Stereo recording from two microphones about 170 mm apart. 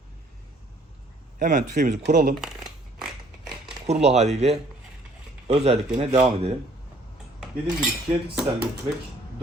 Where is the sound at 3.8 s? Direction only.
40° right (ahead or behind).